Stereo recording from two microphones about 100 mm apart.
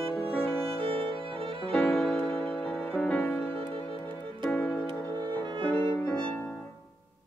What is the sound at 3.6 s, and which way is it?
Music, 60° right (ahead or behind).